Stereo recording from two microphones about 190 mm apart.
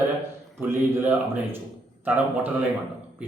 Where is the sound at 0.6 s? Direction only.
10° right (ahead or behind).